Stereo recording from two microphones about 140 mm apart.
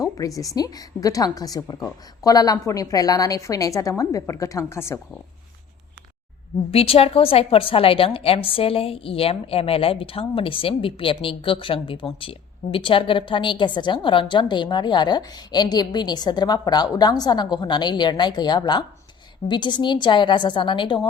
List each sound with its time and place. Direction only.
0.0 s a woman's voice: 25° left (ahead or behind)
6.7 s a woman's voice: 45° left (ahead or behind)